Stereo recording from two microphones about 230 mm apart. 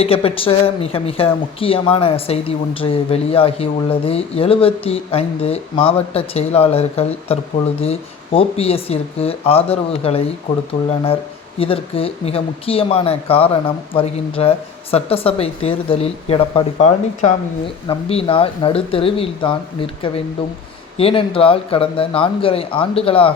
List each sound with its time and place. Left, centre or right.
0.0 s speech: left
11.6 s speech: left
21.0 s speech: left